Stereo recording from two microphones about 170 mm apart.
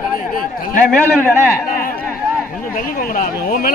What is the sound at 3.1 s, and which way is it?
Speech, 55° left (ahead or behind).